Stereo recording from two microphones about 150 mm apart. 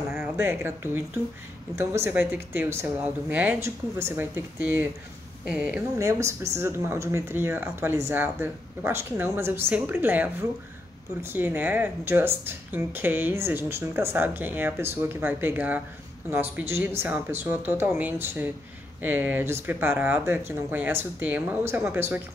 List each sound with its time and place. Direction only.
0.1 s a woman's voice: 15° right (ahead or behind)